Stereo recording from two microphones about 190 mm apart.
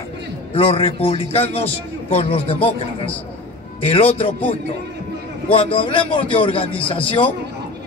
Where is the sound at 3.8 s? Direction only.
30° left (ahead or behind).